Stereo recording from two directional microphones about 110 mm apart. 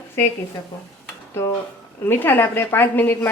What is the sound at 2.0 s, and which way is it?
A woman's voice, 20° left (ahead or behind).